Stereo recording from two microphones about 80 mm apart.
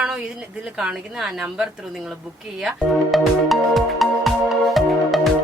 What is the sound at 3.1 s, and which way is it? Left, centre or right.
Music, centre.